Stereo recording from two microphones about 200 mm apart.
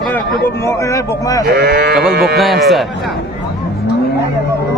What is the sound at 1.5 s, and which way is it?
Livestock, 50° right (ahead or behind).